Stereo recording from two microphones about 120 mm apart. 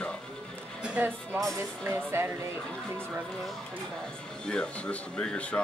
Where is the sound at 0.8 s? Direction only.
15° right (ahead or behind).